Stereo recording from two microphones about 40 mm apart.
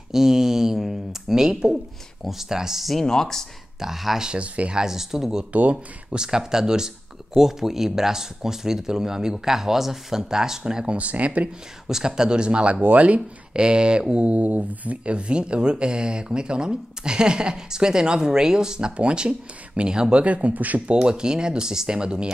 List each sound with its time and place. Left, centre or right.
0.1 s a sound: centre
2.2 s speech: centre
3.0 s speech: centre
3.8 s speech: centre
4.2 s speech: right
4.7 s speech: centre
5.5 s speech: right
6.1 s speech: centre
11.0 s speech: right
11.9 s speech: centre
12.8 s speech: right
13.5 s speech: right
20.2 s speech: right
20.8 s speech: right